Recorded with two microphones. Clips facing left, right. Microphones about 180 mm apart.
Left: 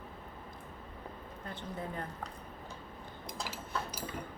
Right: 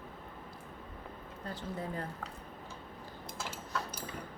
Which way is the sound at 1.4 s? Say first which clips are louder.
Right 2 dB; 35° right (ahead or behind).